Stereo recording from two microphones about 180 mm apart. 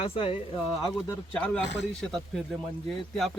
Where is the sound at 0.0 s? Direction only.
30° left (ahead or behind).